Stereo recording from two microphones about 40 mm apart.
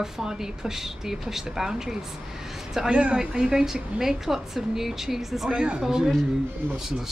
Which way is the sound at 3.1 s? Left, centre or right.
Centre.